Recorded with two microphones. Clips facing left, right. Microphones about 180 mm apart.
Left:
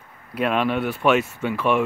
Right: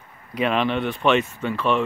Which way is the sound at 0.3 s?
5° left (ahead or behind).